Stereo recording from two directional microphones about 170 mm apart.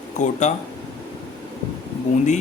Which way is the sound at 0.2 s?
45° left (ahead or behind).